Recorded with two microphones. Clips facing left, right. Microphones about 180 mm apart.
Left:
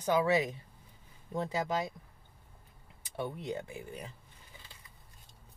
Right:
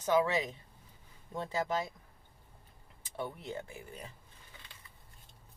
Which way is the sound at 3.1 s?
15° left (ahead or behind).